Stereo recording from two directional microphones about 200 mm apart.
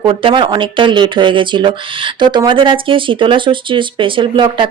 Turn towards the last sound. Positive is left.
turn(degrees=-25)  # may be behind; listen again after turning